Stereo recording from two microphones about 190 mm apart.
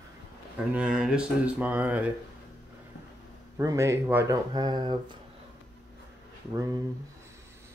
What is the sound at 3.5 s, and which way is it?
Speech, 15° right (ahead or behind).